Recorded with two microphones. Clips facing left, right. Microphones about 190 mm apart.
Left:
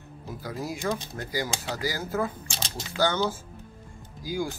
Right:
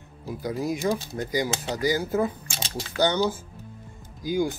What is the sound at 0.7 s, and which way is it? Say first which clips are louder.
Speech: right 4 dB; 20° right (ahead or behind).